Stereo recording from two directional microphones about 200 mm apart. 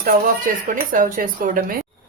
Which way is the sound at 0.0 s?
45° right (ahead or behind).